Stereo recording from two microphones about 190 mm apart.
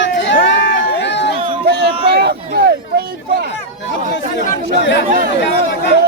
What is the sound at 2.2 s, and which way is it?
Speech, 55° right (ahead or behind).